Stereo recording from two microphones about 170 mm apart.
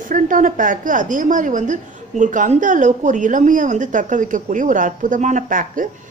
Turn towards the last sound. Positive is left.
turn(degrees=-50)  # may be behind; listen again after turning